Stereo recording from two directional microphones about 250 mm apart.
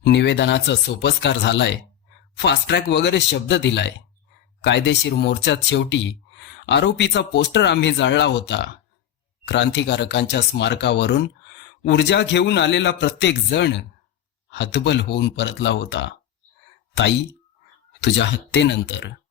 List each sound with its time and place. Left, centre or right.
0.0 s speech: left